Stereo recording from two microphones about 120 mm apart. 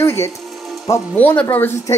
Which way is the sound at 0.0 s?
20° left (ahead or behind).